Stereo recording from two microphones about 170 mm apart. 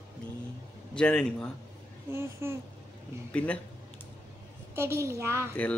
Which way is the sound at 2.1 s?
15° right (ahead or behind).